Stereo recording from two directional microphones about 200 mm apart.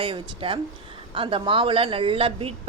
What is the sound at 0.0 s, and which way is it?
A woman's voice, 25° right (ahead or behind).